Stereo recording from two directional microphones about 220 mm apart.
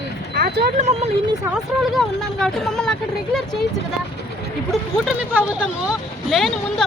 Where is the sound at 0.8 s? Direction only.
30° right (ahead or behind).